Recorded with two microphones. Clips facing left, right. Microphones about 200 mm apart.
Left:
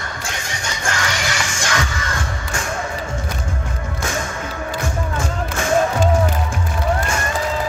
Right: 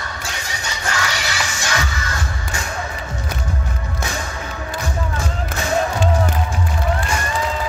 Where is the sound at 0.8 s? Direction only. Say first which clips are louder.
Left 1 dB; 50° left (ahead or behind).